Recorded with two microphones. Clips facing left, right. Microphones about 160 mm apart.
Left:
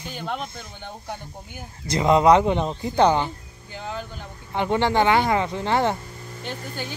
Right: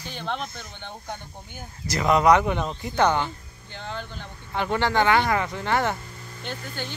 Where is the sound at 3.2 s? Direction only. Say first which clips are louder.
Left 2 dB; 5° left (ahead or behind).